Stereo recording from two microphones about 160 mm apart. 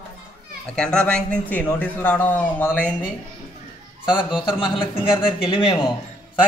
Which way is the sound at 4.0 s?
30° left (ahead or behind).